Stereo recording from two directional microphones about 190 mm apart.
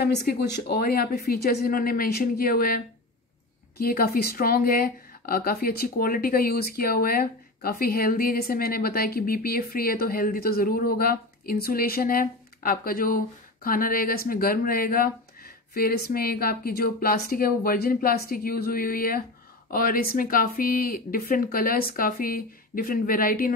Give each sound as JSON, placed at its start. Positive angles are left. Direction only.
{"t": 0.0, "sound": "speech", "side_deg": 55}